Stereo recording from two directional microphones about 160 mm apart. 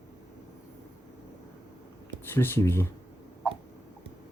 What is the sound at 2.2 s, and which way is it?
Speech, 15° left (ahead or behind).